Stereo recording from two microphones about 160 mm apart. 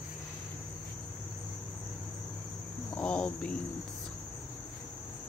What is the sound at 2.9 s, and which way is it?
Cricket, 5° left (ahead or behind).